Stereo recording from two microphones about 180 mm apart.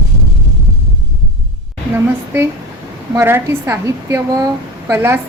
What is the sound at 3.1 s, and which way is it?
A woman's voice, 15° right (ahead or behind).